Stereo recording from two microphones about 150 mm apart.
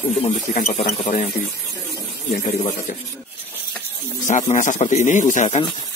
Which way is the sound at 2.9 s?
60° left (ahead or behind).